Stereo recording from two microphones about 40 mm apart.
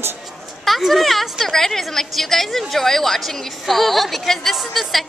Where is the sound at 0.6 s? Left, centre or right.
Centre.